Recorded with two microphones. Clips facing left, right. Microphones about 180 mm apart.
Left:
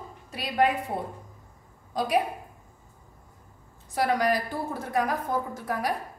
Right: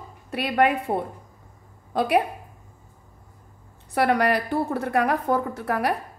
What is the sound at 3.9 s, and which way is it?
A woman's voice, 65° right (ahead or behind).